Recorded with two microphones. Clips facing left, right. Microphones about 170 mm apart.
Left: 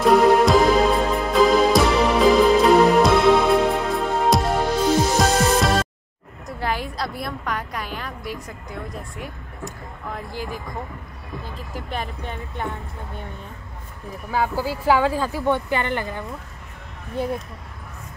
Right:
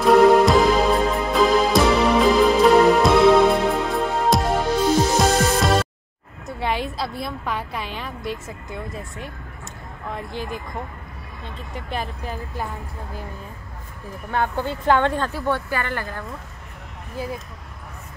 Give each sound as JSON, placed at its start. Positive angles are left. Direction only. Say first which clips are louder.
{"t": 0.0, "sound": "music", "louder": "right 2 dB", "side_deg": 0}
{"t": 7.2, "sound": "speech", "louder": "even", "side_deg": 0}
{"t": 10.3, "sound": "speech", "louder": "right 1 dB", "side_deg": -20}
{"t": 11.4, "sound": "speech", "louder": "right 3 dB", "side_deg": 0}
{"t": 14.3, "sound": "speech", "louder": "left 1 dB", "side_deg": 5}